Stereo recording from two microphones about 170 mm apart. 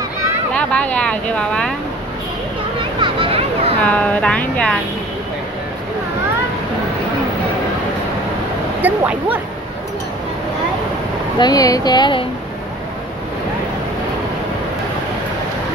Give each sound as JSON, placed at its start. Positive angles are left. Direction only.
{"t": 0.6, "sound": "speech", "side_deg": 10}
{"t": 3.0, "sound": "a sound", "side_deg": -30}
{"t": 3.8, "sound": "speech", "side_deg": 10}
{"t": 8.8, "sound": "speech", "side_deg": -10}
{"t": 11.3, "sound": "speech", "side_deg": 20}